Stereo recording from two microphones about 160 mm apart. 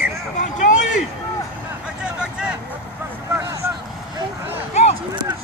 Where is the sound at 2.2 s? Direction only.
5° right (ahead or behind).